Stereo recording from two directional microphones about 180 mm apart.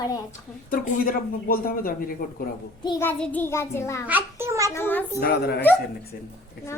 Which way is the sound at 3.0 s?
10° left (ahead or behind).